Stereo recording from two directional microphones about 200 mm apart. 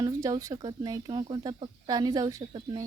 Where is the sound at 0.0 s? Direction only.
15° right (ahead or behind).